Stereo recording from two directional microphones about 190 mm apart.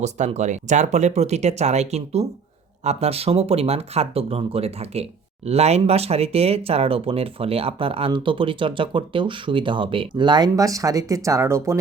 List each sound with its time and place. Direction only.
0.0 s speech: 35° right (ahead or behind); by 11.8 s 15° right (ahead or behind)